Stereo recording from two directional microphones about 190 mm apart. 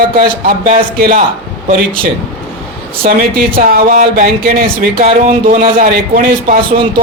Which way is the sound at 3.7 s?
45° right (ahead or behind).